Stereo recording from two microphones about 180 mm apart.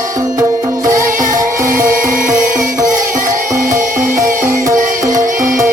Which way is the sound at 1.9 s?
50° right (ahead or behind).